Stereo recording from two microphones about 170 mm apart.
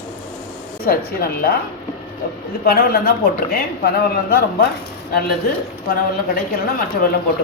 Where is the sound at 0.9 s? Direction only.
65° left (ahead or behind).